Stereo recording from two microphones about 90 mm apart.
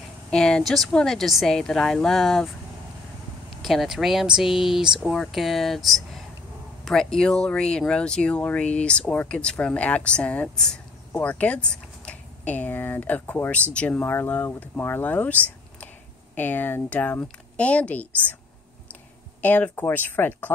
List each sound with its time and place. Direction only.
0.3 s speech: 10° left (ahead or behind)
19.4 s speech: 20° left (ahead or behind)